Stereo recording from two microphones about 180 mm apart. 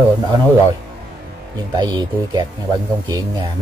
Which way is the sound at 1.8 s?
25° right (ahead or behind).